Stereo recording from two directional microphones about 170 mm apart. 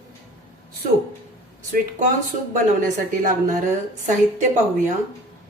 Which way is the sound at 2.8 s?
50° right (ahead or behind).